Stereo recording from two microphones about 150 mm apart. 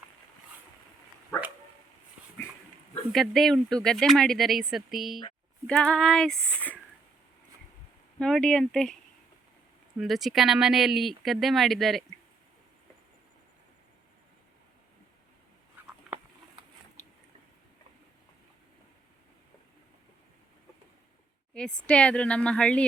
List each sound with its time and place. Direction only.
3.1 s speech: centre (ahead or behind)
8.2 s speech: 5° left (ahead or behind)
10.0 s speech: centre (ahead or behind)
16.1 s a sound: 5° right (ahead or behind)
17.0 s biting: 50° left (ahead or behind)
21.5 s speech: 5° left (ahead or behind)